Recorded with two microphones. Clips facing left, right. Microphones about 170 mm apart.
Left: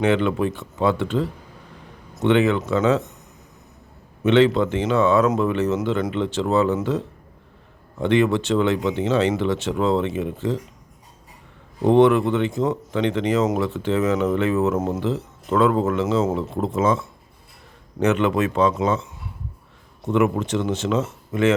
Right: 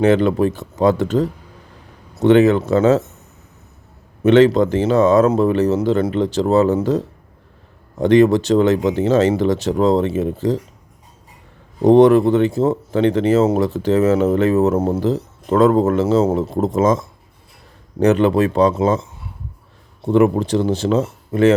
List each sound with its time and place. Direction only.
0.0 s speech: 40° right (ahead or behind)
4.2 s speech: 45° right (ahead or behind)
11.8 s speech: 40° right (ahead or behind)